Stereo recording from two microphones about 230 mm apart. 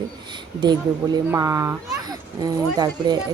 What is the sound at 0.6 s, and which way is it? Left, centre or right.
A child's voice, centre.